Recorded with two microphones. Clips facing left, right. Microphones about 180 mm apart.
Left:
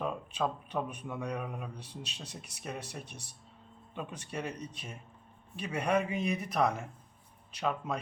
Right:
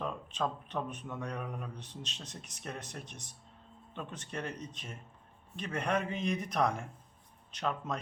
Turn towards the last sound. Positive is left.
turn(degrees=5)  # may be behind; listen again after turning